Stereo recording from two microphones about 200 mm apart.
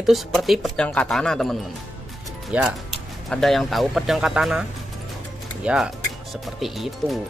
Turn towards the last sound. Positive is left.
turn(degrees=0)  # may be behind; listen again after turning